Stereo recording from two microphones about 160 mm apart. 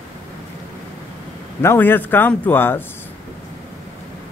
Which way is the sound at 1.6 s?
15° left (ahead or behind).